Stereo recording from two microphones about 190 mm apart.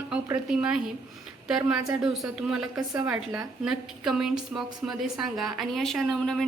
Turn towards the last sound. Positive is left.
turn(degrees=0)  # may be behind; listen again after turning